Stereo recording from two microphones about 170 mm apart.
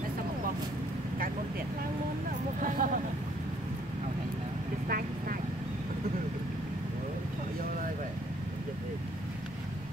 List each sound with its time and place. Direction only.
2.6 s vehicle: 50° right (ahead or behind)